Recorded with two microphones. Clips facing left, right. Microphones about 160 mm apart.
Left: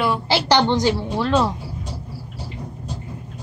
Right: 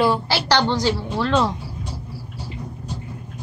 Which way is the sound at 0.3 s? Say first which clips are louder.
Left 2 dB; 20° left (ahead or behind).